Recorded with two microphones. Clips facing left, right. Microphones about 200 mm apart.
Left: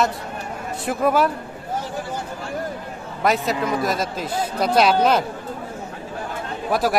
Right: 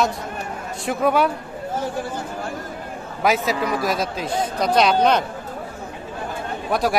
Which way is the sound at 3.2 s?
Centre (ahead or behind).